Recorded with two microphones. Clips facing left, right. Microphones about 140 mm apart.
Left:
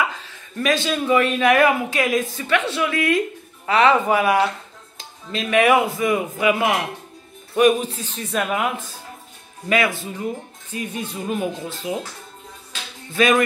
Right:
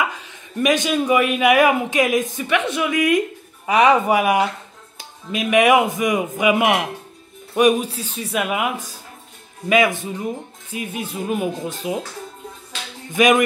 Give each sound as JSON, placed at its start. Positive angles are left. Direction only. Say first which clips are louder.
{"t": 0.3, "sound": "speech", "louder": "right 5 dB", "side_deg": -15}
{"t": 13.1, "sound": "speech", "louder": "right 2 dB", "side_deg": -15}